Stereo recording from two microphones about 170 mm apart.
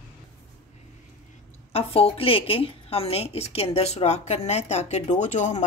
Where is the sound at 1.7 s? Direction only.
35° left (ahead or behind).